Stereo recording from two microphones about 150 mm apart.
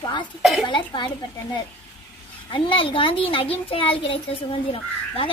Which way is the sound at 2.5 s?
35° left (ahead or behind).